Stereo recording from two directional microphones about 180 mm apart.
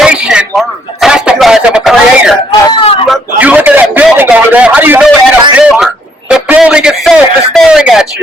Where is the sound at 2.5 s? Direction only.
30° left (ahead or behind).